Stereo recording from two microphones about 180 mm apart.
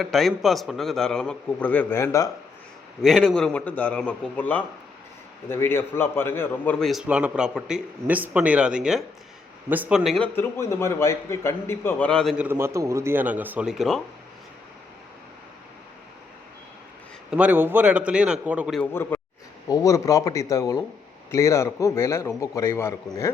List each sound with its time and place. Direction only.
0.0 s a man's voice: centre (ahead or behind); by 2.3 s 15° left (ahead or behind)
3.0 s a man's voice: centre (ahead or behind)
10.3 s a man's voice: 15° left (ahead or behind)
12.5 s speech: 15° right (ahead or behind)
17.3 s speech: 10° right (ahead or behind)
18.8 s a man's voice: 10° left (ahead or behind)